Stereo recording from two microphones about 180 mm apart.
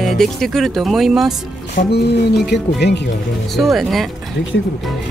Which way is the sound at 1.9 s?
65° left (ahead or behind).